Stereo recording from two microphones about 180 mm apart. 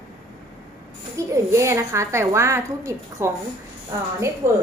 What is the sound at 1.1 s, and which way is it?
A woman's voice, 15° right (ahead or behind).